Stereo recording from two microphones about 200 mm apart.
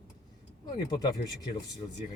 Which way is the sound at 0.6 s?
20° left (ahead or behind).